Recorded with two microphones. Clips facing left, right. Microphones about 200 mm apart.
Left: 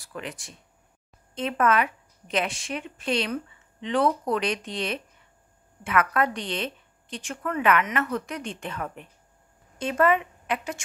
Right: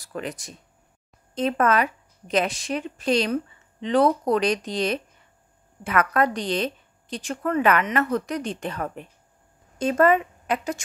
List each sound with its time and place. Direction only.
0.0 s a woman's voice: 40° right (ahead or behind)